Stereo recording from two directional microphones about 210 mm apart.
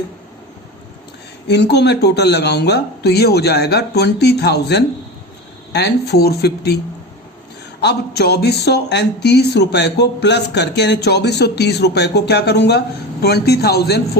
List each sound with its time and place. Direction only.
1.5 s speech: 55° left (ahead or behind)
7.8 s speech: 50° left (ahead or behind)